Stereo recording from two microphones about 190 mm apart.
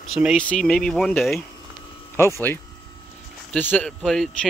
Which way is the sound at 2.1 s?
15° left (ahead or behind).